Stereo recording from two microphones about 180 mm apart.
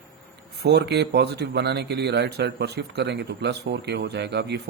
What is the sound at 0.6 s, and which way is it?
Speech, 65° right (ahead or behind).